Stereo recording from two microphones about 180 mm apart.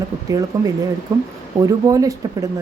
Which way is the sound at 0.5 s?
20° right (ahead or behind).